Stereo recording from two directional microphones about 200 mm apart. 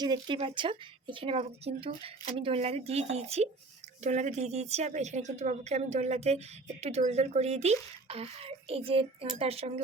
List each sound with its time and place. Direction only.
0.0 s speech: 20° right (ahead or behind)